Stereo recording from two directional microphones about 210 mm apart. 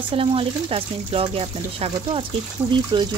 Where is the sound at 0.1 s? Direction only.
25° right (ahead or behind).